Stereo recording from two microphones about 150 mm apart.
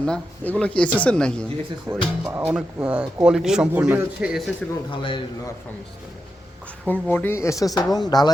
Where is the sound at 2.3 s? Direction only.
5° right (ahead or behind).